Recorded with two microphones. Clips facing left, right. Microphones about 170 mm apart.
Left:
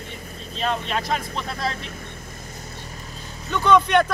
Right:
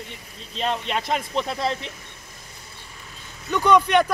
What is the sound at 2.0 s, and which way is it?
Vehicle, 50° left (ahead or behind).